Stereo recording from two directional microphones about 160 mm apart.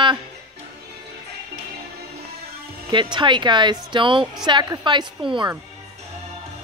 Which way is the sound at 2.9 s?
30° right (ahead or behind).